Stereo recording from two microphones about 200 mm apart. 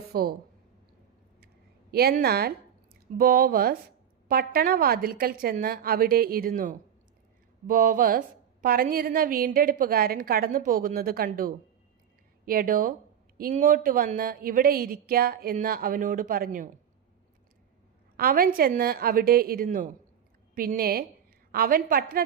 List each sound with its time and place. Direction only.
0.1 s speech: 50° right (ahead or behind)
1.9 s a woman's voice: 50° right (ahead or behind)
18.2 s a woman's voice: 45° right (ahead or behind)